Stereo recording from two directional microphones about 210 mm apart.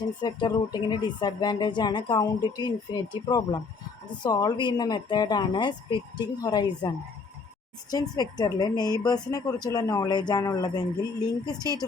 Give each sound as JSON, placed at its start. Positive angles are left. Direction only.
{"t": 0.2, "sound": "speech", "side_deg": 20}
{"t": 7.9, "sound": "speech", "side_deg": 20}